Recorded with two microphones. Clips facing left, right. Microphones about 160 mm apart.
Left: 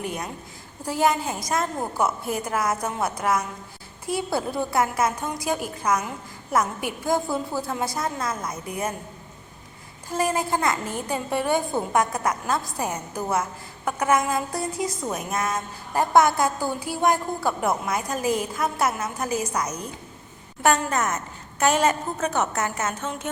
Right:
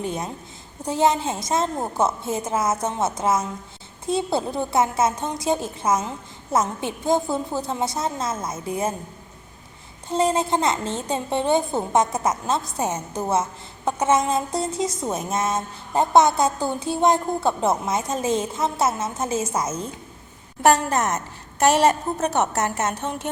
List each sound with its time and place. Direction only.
0.0 s a woman's voice: 25° right (ahead or behind)
10.1 s a woman's voice: 20° right (ahead or behind)
20.6 s a woman's voice: 35° right (ahead or behind)
22.3 s a woman's voice: 40° right (ahead or behind)